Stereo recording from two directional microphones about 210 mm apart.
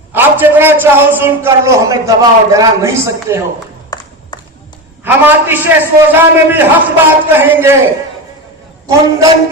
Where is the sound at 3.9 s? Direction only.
20° left (ahead or behind).